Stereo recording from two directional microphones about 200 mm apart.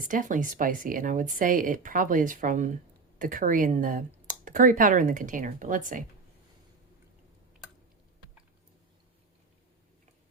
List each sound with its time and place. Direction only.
0.0 s speech: 40° right (ahead or behind)